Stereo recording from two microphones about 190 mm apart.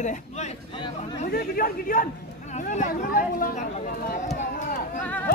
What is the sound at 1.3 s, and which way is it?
Speech, 50° left (ahead or behind).